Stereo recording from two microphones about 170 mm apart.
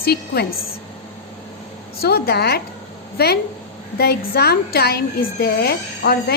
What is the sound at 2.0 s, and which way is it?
A woman's voice, 65° left (ahead or behind).